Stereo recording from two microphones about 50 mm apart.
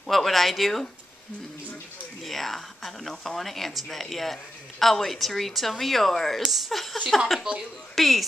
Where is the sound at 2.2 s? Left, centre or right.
Centre.